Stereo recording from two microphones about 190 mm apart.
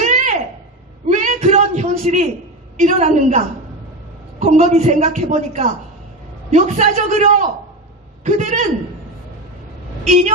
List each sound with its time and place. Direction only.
0.0 s a sound: 40° right (ahead or behind)
2.7 s a woman's voice: 40° right (ahead or behind)
10.0 s a woman's voice: 40° right (ahead or behind)